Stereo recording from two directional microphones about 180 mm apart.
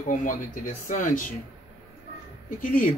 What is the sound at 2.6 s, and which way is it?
Speech, 50° left (ahead or behind).